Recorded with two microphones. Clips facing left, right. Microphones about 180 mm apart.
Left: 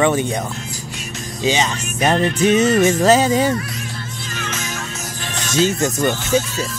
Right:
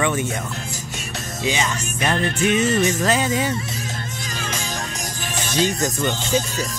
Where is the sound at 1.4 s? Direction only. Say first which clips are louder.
Left 5 dB; 30° left (ahead or behind).